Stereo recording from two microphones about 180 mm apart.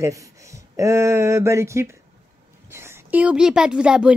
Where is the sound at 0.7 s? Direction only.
15° right (ahead or behind).